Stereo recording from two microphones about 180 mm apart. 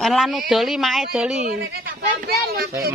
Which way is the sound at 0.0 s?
Centre (ahead or behind).